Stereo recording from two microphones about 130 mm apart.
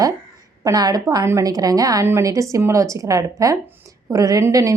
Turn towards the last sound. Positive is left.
turn(degrees=-25)  # may be behind; listen again after turning